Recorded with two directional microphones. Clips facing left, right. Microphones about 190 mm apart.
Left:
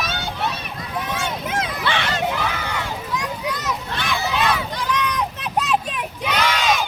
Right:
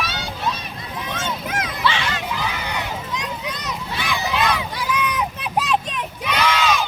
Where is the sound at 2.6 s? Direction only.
20° right (ahead or behind).